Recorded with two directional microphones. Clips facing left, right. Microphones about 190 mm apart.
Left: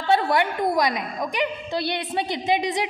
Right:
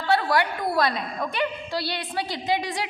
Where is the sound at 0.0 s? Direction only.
20° left (ahead or behind).